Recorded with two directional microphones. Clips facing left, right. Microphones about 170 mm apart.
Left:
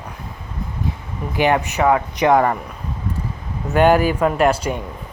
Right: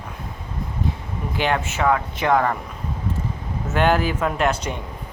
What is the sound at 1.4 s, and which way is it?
Mantra, 15° left (ahead or behind).